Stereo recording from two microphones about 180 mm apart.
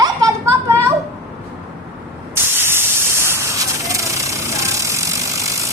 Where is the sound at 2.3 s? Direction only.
15° right (ahead or behind).